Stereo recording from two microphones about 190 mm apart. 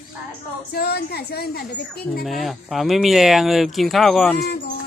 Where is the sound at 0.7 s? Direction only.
55° left (ahead or behind).